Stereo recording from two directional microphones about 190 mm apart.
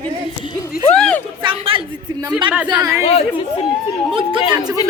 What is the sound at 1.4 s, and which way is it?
A woman's voice, 30° right (ahead or behind).